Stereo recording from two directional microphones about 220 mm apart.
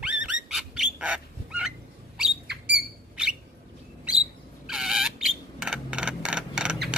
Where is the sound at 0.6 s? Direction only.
5° right (ahead or behind).